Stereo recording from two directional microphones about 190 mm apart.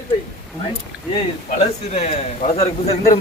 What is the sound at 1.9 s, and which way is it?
Speech, 35° left (ahead or behind).